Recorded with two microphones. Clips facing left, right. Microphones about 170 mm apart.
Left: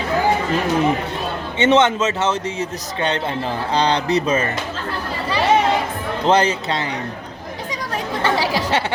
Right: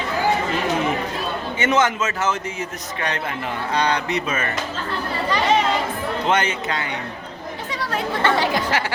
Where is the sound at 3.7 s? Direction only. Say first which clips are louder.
Left 4 dB; 30° left (ahead or behind).